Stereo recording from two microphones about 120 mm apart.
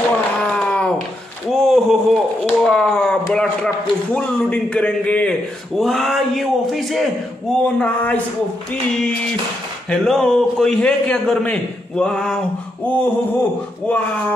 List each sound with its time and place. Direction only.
0.4 s a sound: 10° left (ahead or behind)
2.4 s a man's voice: 5° left (ahead or behind)
7.6 s a man's voice: 10° left (ahead or behind)
9.8 s a man's voice: 5° left (ahead or behind)